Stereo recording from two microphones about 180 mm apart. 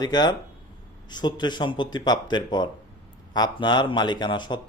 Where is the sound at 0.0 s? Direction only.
25° left (ahead or behind).